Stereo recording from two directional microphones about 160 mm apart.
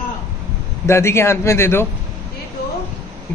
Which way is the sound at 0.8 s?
15° left (ahead or behind).